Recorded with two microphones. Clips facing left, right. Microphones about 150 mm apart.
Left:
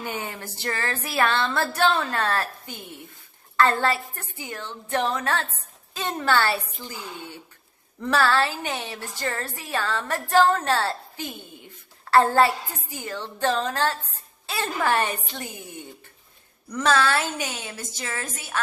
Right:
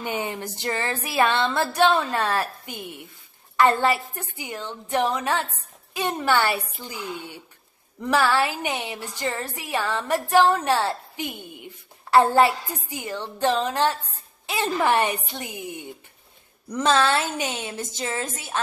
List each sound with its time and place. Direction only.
0.0 s a woman's voice: 20° right (ahead or behind)